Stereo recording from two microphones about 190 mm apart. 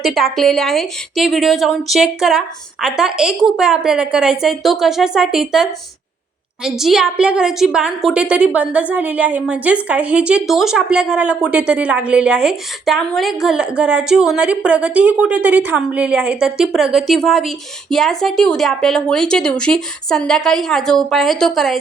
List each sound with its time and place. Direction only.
0.0 s a woman's voice: centre (ahead or behind)
6.7 s a woman's voice: centre (ahead or behind)